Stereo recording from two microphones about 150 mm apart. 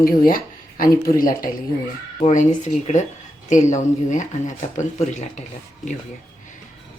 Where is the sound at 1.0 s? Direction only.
70° left (ahead or behind).